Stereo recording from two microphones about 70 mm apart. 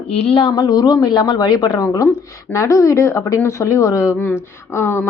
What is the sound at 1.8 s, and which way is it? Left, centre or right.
Speech, left.